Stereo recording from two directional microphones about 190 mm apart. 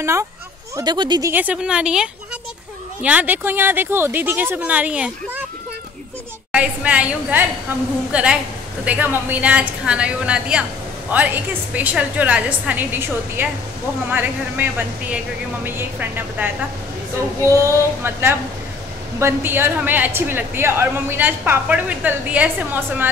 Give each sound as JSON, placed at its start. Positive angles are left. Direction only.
{"t": 0.0, "sound": "a woman's voice", "side_deg": -15}
{"t": 1.3, "sound": "a woman's voice", "side_deg": -10}
{"t": 6.5, "sound": "a woman's voice", "side_deg": -5}